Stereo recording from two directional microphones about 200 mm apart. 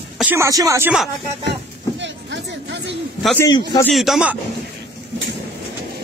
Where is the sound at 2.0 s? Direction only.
60° right (ahead or behind).